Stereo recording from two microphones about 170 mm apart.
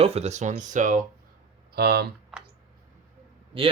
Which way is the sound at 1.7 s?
70° right (ahead or behind).